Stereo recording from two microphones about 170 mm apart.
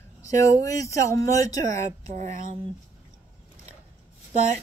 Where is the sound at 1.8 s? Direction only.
45° right (ahead or behind).